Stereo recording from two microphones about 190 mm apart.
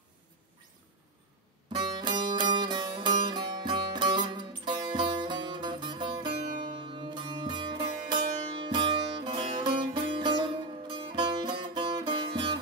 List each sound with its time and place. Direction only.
1.8 s music: 25° right (ahead or behind)